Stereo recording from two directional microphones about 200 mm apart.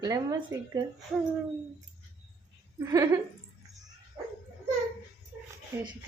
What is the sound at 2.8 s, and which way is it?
Speech, 15° right (ahead or behind).